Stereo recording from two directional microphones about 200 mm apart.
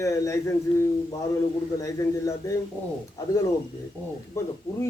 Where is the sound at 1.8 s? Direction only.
15° left (ahead or behind).